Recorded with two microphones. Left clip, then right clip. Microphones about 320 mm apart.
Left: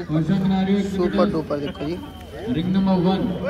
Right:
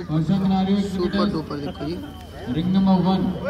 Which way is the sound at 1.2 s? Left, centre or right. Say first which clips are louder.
Left 4 dB; centre.